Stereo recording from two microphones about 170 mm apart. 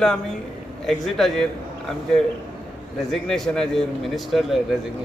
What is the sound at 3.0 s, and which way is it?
A man's voice, centre (ahead or behind).